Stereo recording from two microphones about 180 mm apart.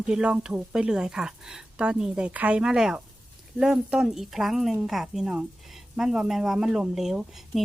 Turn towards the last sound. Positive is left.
turn(degrees=0)  # may be behind; listen again after turning